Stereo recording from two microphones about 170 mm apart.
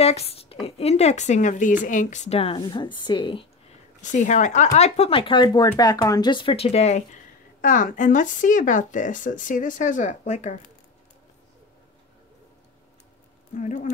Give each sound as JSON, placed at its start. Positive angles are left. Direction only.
{"t": 0.0, "sound": "speech", "side_deg": 35}
{"t": 4.0, "sound": "speech", "side_deg": 45}
{"t": 7.6, "sound": "speech", "side_deg": 50}
{"t": 13.6, "sound": "speech", "side_deg": 45}